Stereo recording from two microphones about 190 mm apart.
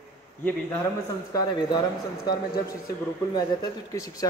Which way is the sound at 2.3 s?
20° left (ahead or behind).